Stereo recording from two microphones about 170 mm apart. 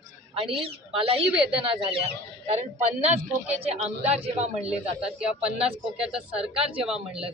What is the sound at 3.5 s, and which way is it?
Speech, 35° right (ahead or behind).